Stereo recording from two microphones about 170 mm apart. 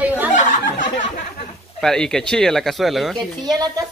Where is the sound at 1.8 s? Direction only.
5° left (ahead or behind).